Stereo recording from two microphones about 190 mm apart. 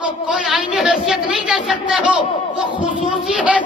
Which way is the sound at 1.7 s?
5° right (ahead or behind).